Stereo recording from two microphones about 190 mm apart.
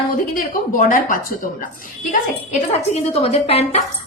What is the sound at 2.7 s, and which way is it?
A woman's voice, 30° left (ahead or behind).